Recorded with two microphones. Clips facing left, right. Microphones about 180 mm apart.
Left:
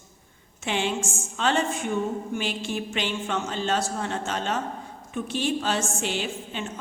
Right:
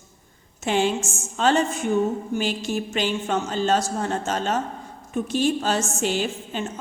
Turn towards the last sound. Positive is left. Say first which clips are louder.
# right 4 dB
turn(degrees=-40)  # may be behind; listen again after turning